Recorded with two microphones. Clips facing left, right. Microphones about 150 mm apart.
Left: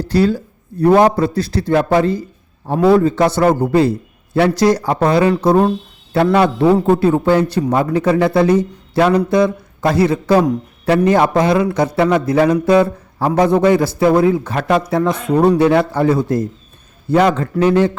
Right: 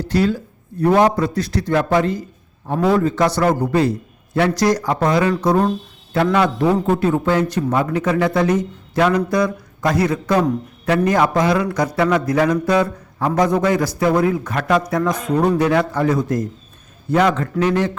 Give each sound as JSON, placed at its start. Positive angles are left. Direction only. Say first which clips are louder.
{"t": 0.0, "sound": "a man's voice", "louder": "left 3 dB", "side_deg": 35}